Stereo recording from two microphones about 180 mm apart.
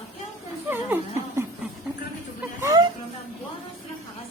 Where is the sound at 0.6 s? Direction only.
10° right (ahead or behind).